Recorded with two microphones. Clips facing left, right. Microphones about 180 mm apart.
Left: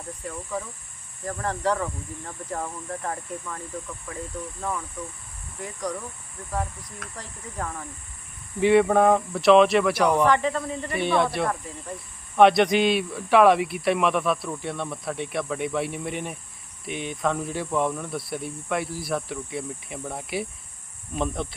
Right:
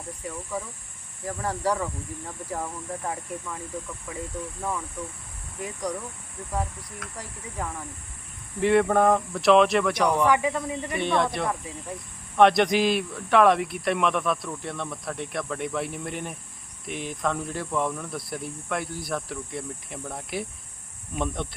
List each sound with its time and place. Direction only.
0.2 s speech: 10° right (ahead or behind)
5.6 s speech: 10° right (ahead or behind)
8.6 s speech: centre (ahead or behind)
10.2 s speech: 10° right (ahead or behind)
10.9 s speech: 5° left (ahead or behind)
11.4 s speech: 10° right (ahead or behind)